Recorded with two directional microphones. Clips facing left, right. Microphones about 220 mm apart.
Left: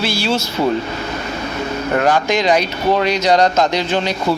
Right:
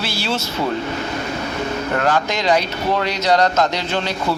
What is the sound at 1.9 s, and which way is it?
Speech, 15° left (ahead or behind).